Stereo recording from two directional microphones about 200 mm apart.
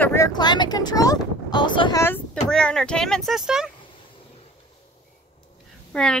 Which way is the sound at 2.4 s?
5° left (ahead or behind).